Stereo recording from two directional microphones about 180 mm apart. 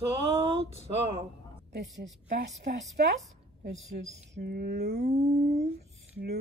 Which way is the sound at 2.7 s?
60° right (ahead or behind).